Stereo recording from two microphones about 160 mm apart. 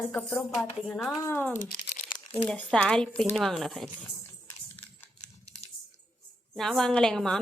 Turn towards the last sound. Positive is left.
turn(degrees=5)  # may be behind; listen again after turning